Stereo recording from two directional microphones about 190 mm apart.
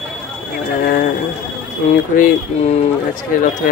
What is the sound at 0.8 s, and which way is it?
Speech, 50° left (ahead or behind).